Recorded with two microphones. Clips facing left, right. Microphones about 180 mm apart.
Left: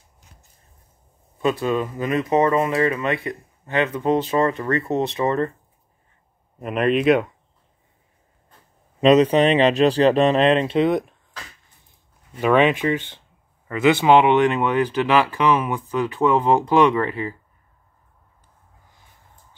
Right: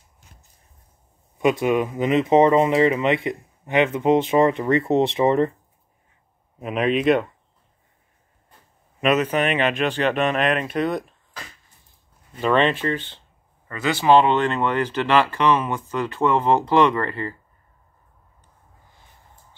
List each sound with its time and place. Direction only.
1.4 s speech: 15° right (ahead or behind)
6.6 s speech: centre (ahead or behind)
9.0 s speech: 30° left (ahead or behind)
12.4 s speech: 10° left (ahead or behind)